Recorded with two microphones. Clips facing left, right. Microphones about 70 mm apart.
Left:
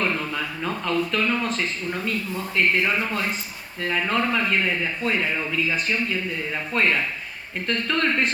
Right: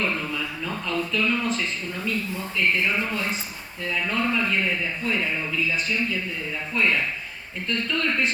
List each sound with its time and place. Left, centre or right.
0.0 s a sound: left
2.6 s speech: left
3.8 s a man's voice: left